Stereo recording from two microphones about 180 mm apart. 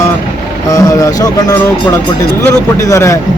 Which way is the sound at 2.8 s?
20° left (ahead or behind).